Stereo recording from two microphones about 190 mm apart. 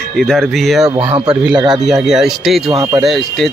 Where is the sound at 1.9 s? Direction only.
Centre (ahead or behind).